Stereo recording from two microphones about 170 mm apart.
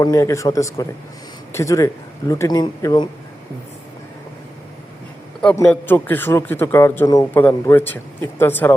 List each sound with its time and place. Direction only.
0.0 s a man's voice: 20° left (ahead or behind)
5.6 s a man's voice: 10° left (ahead or behind)